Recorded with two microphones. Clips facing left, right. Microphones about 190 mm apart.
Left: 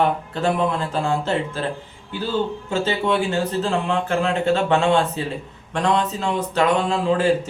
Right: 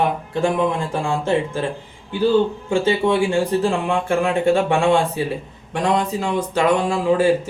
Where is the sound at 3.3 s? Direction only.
10° right (ahead or behind).